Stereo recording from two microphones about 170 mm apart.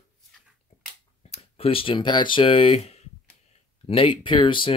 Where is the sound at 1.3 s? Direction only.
35° left (ahead or behind).